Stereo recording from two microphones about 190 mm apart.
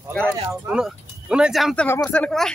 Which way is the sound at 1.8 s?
10° left (ahead or behind).